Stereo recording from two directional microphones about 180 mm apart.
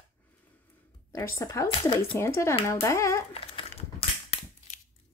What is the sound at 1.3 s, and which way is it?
A woman's voice, 15° left (ahead or behind).